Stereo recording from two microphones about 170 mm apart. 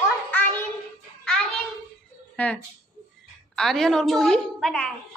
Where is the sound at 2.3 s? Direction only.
5° left (ahead or behind).